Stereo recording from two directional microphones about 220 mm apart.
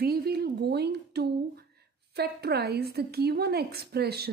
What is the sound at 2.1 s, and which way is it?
Speech, 45° right (ahead or behind).